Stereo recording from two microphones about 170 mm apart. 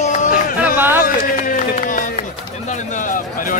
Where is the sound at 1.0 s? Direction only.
55° left (ahead or behind).